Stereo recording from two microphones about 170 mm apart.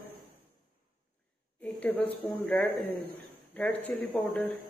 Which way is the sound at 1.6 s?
10° left (ahead or behind).